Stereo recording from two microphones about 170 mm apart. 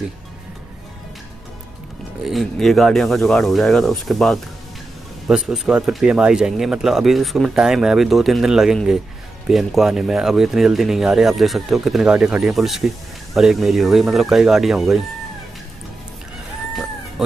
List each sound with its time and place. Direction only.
2.2 s speech: centre (ahead or behind)